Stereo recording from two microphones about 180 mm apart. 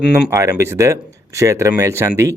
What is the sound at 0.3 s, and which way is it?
Speech, 15° right (ahead or behind).